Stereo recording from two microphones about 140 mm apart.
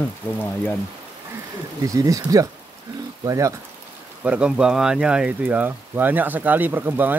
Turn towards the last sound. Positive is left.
turn(degrees=-15)  # may be behind; listen again after turning